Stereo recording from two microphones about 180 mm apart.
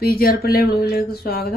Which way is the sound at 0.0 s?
55° left (ahead or behind).